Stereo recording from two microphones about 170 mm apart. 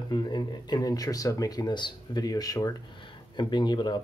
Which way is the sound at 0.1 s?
25° left (ahead or behind).